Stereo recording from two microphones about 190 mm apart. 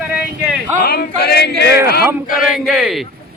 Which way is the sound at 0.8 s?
60° left (ahead or behind).